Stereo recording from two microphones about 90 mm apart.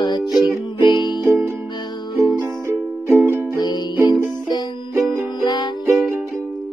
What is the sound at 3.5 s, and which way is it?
Music, 50° left (ahead or behind).